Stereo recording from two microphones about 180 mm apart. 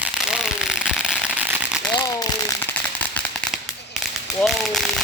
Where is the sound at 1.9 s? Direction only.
15° left (ahead or behind).